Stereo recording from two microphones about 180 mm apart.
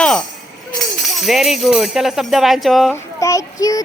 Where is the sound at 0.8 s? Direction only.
Centre (ahead or behind).